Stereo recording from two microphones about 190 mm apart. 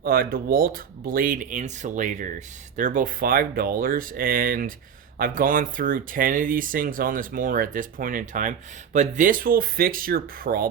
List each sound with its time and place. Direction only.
0.0 s speech: 50° right (ahead or behind)